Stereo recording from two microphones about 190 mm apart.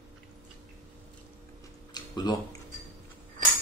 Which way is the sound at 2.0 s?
20° left (ahead or behind).